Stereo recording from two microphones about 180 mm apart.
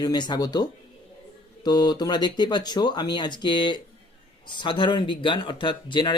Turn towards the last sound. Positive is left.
turn(degrees=25)  # may be behind; listen again after turning